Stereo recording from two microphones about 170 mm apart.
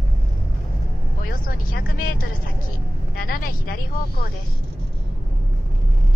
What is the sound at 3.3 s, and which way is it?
Speech, 60° left (ahead or behind).